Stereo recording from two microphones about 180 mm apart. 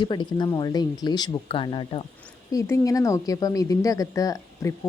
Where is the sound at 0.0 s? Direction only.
25° left (ahead or behind).